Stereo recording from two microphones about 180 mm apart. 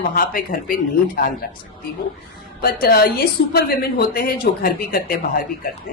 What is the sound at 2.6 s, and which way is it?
A woman's voice, 55° left (ahead or behind).